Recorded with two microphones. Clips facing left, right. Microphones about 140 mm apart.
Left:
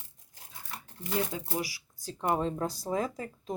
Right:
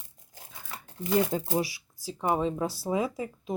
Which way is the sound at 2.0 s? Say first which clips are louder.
Right 2 dB; 5° right (ahead or behind).